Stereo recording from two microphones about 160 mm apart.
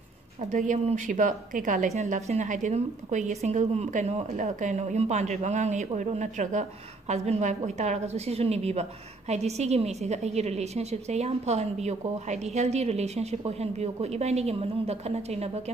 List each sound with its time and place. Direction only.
0.4 s a woman's voice: 50° right (ahead or behind)